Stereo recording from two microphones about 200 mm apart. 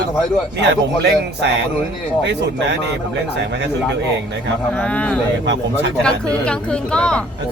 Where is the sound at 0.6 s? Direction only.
60° right (ahead or behind).